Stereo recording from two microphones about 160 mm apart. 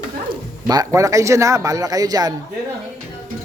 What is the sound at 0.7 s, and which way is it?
Speech, 20° right (ahead or behind).